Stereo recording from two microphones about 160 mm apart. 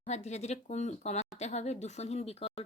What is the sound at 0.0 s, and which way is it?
A woman's voice, 45° left (ahead or behind).